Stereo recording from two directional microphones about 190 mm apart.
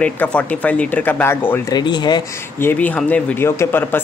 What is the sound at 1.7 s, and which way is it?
Speech, 20° left (ahead or behind).